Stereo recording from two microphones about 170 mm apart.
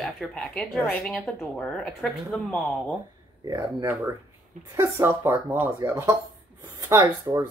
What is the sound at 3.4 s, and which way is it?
Speech, 20° right (ahead or behind).